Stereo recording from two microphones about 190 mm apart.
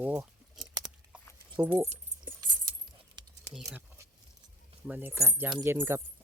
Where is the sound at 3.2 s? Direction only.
25° right (ahead or behind).